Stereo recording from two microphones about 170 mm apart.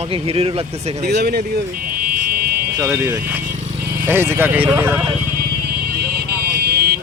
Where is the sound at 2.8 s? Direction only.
15° right (ahead or behind).